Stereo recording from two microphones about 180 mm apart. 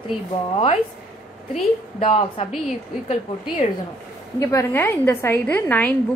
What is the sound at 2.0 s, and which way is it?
Speech, 35° left (ahead or behind).